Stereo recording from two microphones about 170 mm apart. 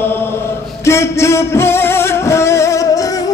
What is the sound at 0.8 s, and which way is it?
Music, 15° left (ahead or behind).